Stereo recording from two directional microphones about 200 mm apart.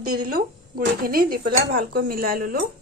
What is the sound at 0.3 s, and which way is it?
Speech, 50° right (ahead or behind).